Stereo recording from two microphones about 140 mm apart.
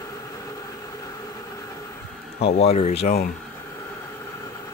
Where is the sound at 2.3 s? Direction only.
45° left (ahead or behind).